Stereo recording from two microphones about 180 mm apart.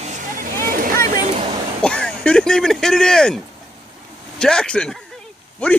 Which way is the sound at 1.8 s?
5° left (ahead or behind).